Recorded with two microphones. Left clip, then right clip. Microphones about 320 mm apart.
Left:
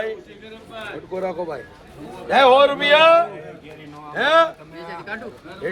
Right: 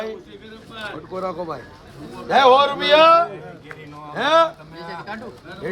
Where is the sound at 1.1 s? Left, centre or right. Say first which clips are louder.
Left 2 dB; right.